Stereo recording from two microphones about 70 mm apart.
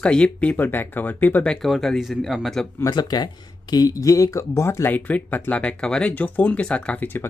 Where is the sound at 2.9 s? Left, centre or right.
Left.